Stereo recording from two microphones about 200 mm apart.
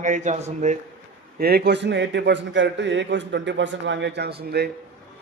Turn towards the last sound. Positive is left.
turn(degrees=-55)  # may be behind; listen again after turning